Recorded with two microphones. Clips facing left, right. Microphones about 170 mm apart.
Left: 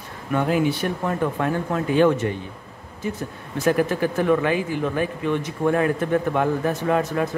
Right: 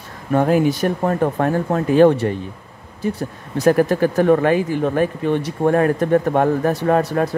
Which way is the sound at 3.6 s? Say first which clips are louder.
Right 5 dB; 40° right (ahead or behind).